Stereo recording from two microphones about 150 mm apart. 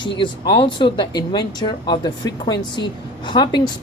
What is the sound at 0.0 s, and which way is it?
Speech, 30° left (ahead or behind).